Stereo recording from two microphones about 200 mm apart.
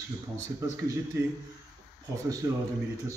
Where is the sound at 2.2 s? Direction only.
15° right (ahead or behind).